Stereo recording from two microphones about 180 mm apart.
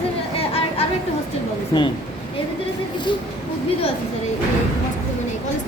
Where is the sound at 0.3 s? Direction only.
30° left (ahead or behind).